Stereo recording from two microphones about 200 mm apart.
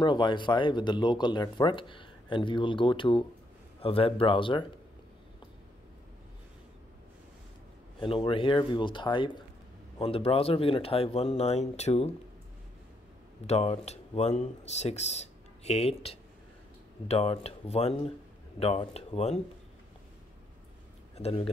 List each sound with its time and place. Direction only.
0.0 s speech: 25° left (ahead or behind)
8.0 s speech: 25° left (ahead or behind)
13.5 s speech: 30° left (ahead or behind)
21.2 s speech: 30° left (ahead or behind)